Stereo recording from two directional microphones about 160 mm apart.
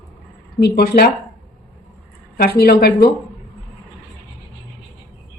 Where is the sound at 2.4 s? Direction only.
75° left (ahead or behind).